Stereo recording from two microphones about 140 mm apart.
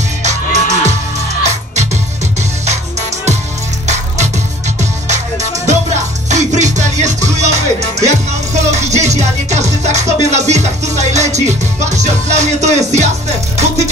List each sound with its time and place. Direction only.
0.2 s music: 55° right (ahead or behind)
3.8 s music: 55° right (ahead or behind)